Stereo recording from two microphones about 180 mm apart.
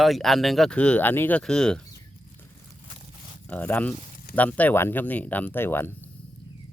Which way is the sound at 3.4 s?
10° left (ahead or behind).